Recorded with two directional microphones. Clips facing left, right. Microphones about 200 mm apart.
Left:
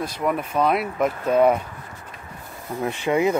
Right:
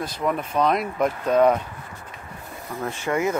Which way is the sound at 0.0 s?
10° left (ahead or behind).